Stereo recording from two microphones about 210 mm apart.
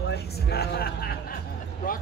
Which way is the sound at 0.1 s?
50° left (ahead or behind).